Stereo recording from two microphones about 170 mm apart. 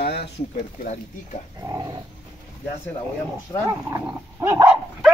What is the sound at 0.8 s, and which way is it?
Speech, 45° left (ahead or behind).